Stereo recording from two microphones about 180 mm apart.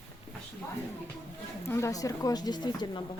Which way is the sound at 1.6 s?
15° left (ahead or behind).